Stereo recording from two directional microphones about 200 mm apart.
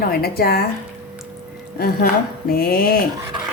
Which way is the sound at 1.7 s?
50° left (ahead or behind).